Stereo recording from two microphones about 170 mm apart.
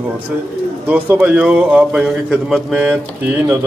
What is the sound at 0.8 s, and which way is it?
Speech, 10° right (ahead or behind).